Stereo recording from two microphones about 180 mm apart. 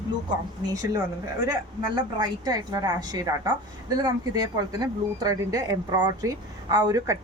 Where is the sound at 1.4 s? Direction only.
20° right (ahead or behind).